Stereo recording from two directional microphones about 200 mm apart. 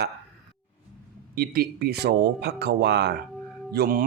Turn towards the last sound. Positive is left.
turn(degrees=-50)  # may be behind; listen again after turning